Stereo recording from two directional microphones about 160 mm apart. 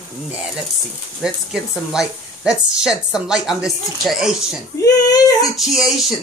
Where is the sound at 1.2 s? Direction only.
5° right (ahead or behind).